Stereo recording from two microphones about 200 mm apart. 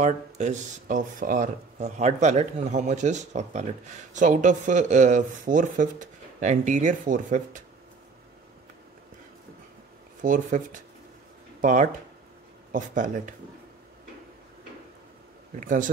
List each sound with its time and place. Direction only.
0.0 s speech: 35° right (ahead or behind)
10.2 s speech: 40° right (ahead or behind)
15.6 s speech: 40° right (ahead or behind)